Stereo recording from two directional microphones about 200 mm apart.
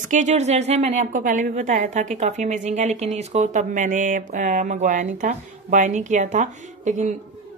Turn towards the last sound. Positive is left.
turn(degrees=-35)  # may be behind; listen again after turning